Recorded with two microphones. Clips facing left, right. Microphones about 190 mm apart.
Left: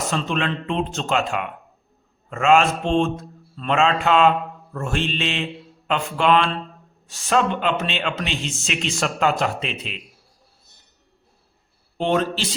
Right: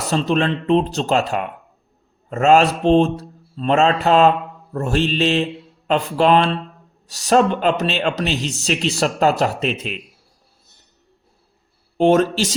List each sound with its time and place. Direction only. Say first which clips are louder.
0.1 s speech: right 9 dB; 35° right (ahead or behind)
11.9 s speech: right 7 dB; 45° right (ahead or behind)